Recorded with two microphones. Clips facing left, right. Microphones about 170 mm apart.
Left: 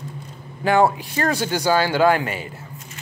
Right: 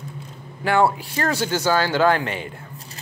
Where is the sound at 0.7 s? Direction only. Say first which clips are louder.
Left 2 dB; 15° left (ahead or behind).